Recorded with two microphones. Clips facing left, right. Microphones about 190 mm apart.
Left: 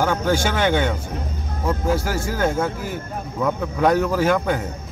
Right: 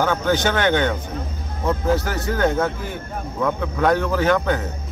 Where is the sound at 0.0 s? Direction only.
10° left (ahead or behind).